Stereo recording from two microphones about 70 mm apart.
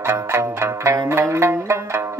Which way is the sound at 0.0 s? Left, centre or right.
Right.